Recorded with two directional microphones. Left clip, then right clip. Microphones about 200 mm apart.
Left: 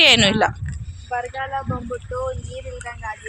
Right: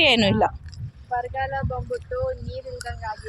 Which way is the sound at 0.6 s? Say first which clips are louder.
Left 7 dB; 30° left (ahead or behind).